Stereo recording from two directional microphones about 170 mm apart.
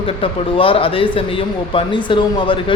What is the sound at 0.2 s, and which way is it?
A man's voice, 30° left (ahead or behind).